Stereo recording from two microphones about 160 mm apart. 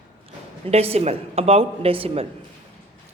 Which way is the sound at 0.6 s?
40° right (ahead or behind).